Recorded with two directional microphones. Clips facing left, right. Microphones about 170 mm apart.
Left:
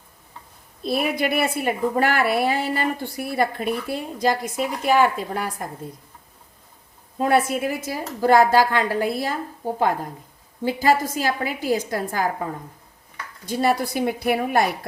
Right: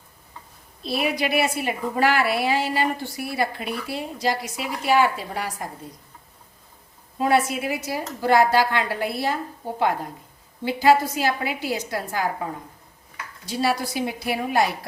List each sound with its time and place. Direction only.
0.8 s a woman's voice: 50° left (ahead or behind)
7.2 s a woman's voice: 50° left (ahead or behind)
13.4 s a woman's voice: 50° left (ahead or behind)